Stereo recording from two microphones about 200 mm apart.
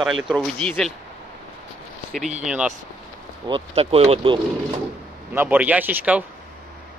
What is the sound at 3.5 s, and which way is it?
Speech, 30° right (ahead or behind).